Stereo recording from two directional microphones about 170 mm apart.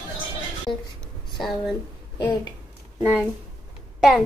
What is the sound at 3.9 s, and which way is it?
Speech, centre (ahead or behind).